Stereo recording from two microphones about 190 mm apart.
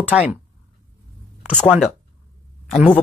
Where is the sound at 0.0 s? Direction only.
10° right (ahead or behind).